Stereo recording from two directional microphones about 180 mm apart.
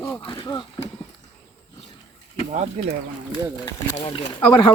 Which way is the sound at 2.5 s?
40° right (ahead or behind).